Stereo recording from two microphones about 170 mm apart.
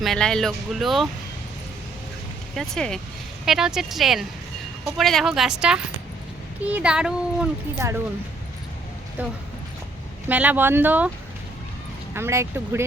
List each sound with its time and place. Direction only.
0.0 s speech: 5° left (ahead or behind)
2.6 s speech: 5° left (ahead or behind)
7.8 s speech: 15° right (ahead or behind)
9.2 s speech: 10° right (ahead or behind)
12.1 s speech: 15° right (ahead or behind)